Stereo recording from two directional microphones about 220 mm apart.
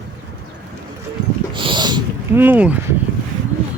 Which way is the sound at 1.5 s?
20° right (ahead or behind).